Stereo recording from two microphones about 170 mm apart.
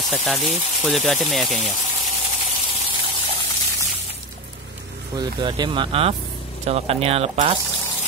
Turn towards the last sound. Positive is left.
turn(degrees=-35)  # may be behind; listen again after turning